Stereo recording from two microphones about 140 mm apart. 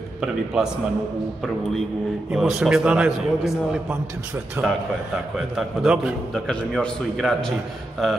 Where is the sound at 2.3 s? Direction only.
5° right (ahead or behind).